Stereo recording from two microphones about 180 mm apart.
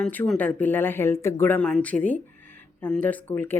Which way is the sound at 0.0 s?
5° left (ahead or behind).